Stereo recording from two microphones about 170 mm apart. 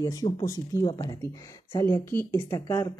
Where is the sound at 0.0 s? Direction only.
25° left (ahead or behind).